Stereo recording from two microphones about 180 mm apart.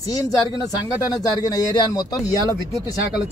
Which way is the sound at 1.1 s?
20° left (ahead or behind).